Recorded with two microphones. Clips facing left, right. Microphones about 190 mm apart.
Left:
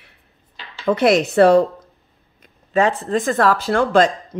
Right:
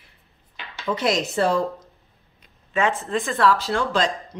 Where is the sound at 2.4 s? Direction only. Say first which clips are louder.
Left 5 dB; 40° left (ahead or behind).